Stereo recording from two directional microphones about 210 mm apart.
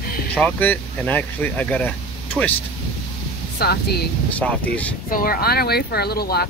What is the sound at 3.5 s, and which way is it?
Speech, 50° left (ahead or behind).